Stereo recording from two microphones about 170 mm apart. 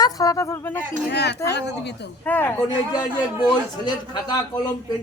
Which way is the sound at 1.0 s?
75° left (ahead or behind).